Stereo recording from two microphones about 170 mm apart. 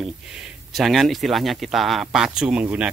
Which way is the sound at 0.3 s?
Centre (ahead or behind).